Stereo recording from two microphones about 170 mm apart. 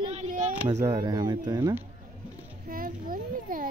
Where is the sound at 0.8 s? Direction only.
20° right (ahead or behind).